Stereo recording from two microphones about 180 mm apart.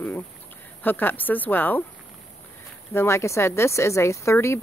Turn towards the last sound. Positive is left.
turn(degrees=15)  # may be behind; listen again after turning